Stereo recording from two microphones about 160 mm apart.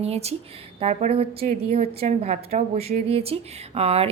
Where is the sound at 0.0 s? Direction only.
40° right (ahead or behind).